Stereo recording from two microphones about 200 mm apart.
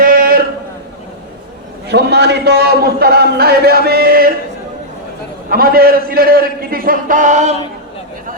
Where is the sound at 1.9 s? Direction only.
55° right (ahead or behind).